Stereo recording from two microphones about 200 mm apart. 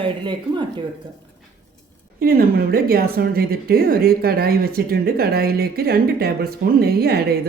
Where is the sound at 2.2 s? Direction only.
50° right (ahead or behind).